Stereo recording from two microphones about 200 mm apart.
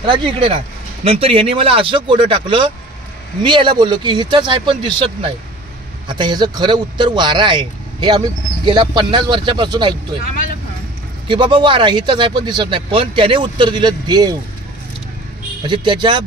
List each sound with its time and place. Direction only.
0.0 s a man's voice: 25° right (ahead or behind)
11.2 s a man's voice: 25° right (ahead or behind)
15.6 s a man's voice: 25° right (ahead or behind)